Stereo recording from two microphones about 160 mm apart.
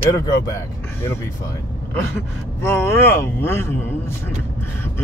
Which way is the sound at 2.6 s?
15° left (ahead or behind).